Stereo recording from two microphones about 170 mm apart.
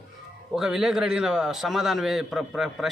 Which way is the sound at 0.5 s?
Centre (ahead or behind).